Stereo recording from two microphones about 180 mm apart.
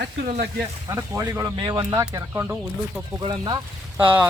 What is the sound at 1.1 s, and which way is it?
Speech, 15° right (ahead or behind).